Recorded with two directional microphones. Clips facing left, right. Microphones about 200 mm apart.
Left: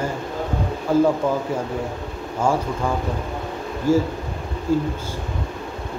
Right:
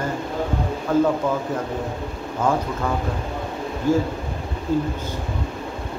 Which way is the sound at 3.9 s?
10° left (ahead or behind).